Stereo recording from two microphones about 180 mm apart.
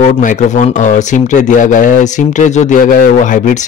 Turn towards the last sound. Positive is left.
turn(degrees=45)  # may be behind; listen again after turning